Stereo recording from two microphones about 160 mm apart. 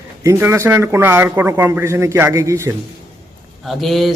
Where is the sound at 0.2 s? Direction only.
15° right (ahead or behind).